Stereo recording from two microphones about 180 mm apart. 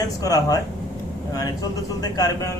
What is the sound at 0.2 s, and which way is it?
Speech, 20° left (ahead or behind).